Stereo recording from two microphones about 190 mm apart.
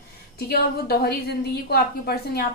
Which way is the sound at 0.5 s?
55° left (ahead or behind).